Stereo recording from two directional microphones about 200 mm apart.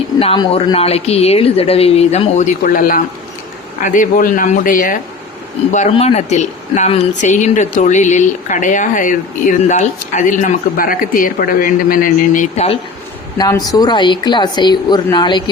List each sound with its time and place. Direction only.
0.2 s a woman's voice: 30° left (ahead or behind)
13.4 s a woman's voice: 20° left (ahead or behind)